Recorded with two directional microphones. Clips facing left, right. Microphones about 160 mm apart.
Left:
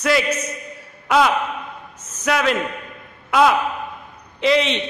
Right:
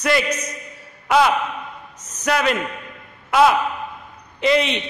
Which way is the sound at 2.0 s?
35° right (ahead or behind).